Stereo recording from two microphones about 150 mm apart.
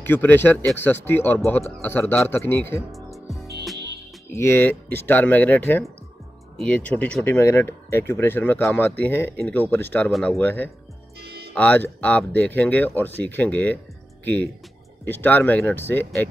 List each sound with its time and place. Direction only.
0.0 s speech: 15° left (ahead or behind)
4.3 s speech: 15° left (ahead or behind)
10.1 s speech: centre (ahead or behind)
10.4 s speech: 10° left (ahead or behind)
11.1 s music: 90° right
11.5 s speech: 10° left (ahead or behind)